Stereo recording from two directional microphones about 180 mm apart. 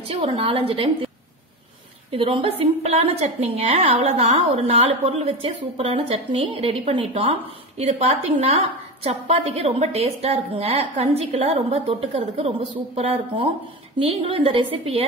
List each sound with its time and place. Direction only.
0.1 s a woman's voice: 30° right (ahead or behind)